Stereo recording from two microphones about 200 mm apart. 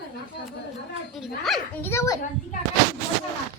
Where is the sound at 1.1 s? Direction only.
Centre (ahead or behind).